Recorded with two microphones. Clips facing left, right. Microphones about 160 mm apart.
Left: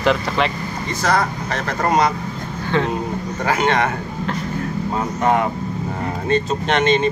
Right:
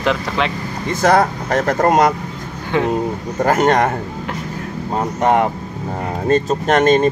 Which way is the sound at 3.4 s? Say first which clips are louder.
Right 5 dB; 45° right (ahead or behind).